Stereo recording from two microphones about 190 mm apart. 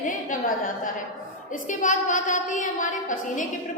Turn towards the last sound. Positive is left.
turn(degrees=45)  # may be behind; listen again after turning